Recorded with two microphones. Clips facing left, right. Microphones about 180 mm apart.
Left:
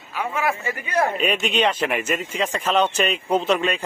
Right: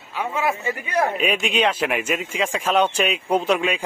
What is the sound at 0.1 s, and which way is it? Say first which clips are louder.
A man's voice: right 1 dB; 20° right (ahead or behind).